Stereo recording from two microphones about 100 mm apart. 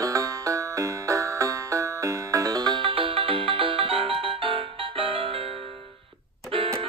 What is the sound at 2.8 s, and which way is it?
Music, 65° right (ahead or behind).